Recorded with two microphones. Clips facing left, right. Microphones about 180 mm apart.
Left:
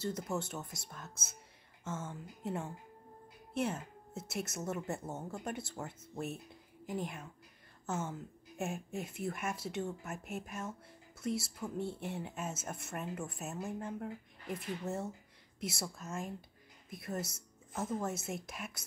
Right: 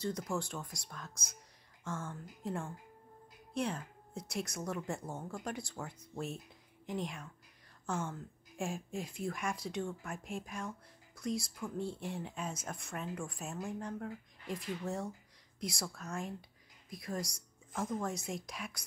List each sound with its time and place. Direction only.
0.4 s speech: 5° left (ahead or behind)